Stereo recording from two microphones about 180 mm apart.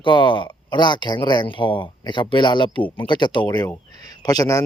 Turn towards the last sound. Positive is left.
turn(degrees=20)  # may be behind; listen again after turning